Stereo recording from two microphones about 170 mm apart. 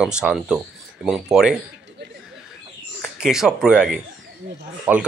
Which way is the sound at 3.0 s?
5° right (ahead or behind).